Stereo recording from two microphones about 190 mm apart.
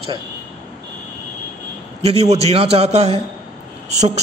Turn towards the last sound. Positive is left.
turn(degrees=-35)  # may be behind; listen again after turning